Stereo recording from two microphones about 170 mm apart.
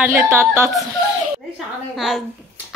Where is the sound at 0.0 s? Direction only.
15° right (ahead or behind).